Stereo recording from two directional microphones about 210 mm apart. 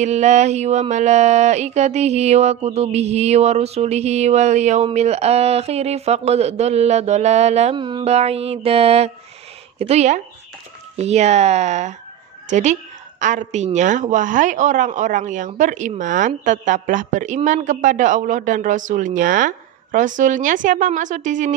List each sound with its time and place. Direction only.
0.0 s a woman's voice: 35° right (ahead or behind)